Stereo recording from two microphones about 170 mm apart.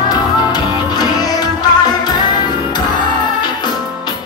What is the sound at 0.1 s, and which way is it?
Music, 25° left (ahead or behind).